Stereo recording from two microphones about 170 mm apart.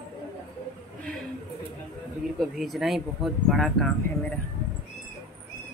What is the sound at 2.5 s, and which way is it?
Speech, centre (ahead or behind).